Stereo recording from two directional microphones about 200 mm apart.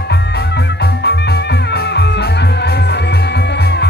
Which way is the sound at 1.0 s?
55° left (ahead or behind).